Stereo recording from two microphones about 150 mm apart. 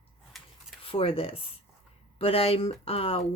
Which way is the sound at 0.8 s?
40° left (ahead or behind).